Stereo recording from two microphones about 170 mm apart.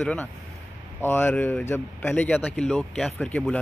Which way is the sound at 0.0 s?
5° left (ahead or behind).